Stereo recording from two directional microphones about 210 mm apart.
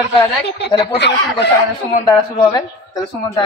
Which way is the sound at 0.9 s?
55° left (ahead or behind).